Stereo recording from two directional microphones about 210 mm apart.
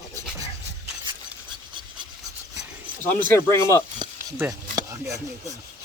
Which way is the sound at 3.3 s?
10° left (ahead or behind).